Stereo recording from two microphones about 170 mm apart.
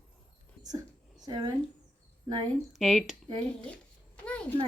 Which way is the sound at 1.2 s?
25° right (ahead or behind).